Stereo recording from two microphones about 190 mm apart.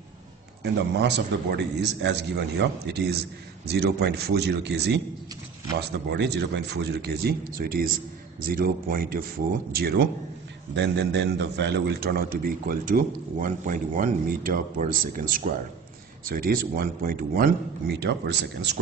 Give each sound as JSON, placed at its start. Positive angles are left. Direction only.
{"t": 0.9, "sound": "a man's voice", "side_deg": -60}